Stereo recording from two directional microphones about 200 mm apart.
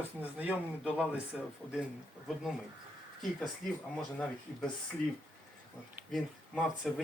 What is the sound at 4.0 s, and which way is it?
Speech, 5° left (ahead or behind).